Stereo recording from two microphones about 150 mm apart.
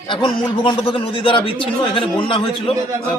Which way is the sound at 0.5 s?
35° left (ahead or behind).